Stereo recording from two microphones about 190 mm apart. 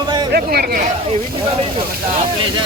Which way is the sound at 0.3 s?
55° right (ahead or behind).